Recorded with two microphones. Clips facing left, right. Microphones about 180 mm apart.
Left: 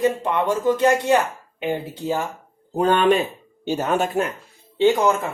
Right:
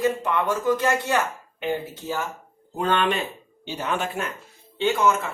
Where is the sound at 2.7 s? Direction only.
45° left (ahead or behind).